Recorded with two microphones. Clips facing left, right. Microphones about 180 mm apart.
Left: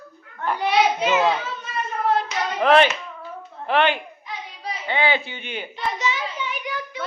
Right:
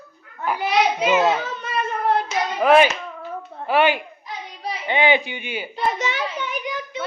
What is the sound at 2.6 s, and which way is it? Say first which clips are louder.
A child's voice: right 1 dB; 10° right (ahead or behind).